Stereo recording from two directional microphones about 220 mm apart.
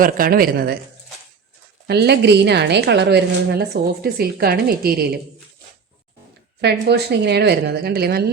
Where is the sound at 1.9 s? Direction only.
50° right (ahead or behind).